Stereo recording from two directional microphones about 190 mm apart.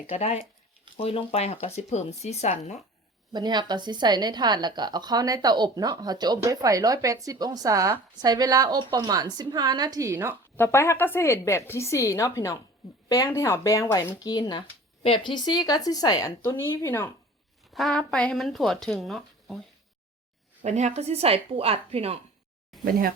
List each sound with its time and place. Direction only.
0.1 s speech: 35° left (ahead or behind)
3.3 s a woman's voice: 20° right (ahead or behind)
10.6 s a woman's voice: 15° left (ahead or behind)
17.7 s speech: 5° left (ahead or behind)
20.6 s speech: 35° right (ahead or behind)
22.8 s speech: 50° right (ahead or behind)